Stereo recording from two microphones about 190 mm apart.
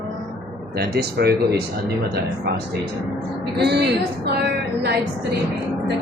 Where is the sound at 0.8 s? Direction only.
55° right (ahead or behind).